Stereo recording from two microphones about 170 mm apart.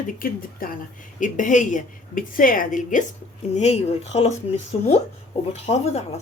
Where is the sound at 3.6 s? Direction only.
40° left (ahead or behind).